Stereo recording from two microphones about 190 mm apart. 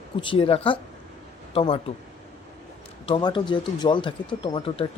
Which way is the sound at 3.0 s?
25° left (ahead or behind).